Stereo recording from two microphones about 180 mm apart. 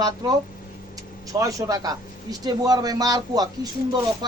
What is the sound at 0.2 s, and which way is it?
A man's voice, 20° right (ahead or behind).